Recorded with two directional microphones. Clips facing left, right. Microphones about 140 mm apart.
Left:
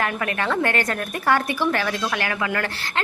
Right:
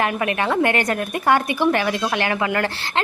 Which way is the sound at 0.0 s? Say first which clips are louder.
Right 3 dB; 20° right (ahead or behind).